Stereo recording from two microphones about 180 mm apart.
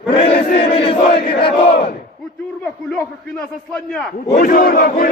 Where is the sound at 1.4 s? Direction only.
30° left (ahead or behind).